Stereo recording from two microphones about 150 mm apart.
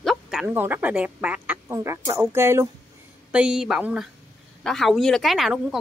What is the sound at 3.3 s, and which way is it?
A woman's voice, 5° right (ahead or behind).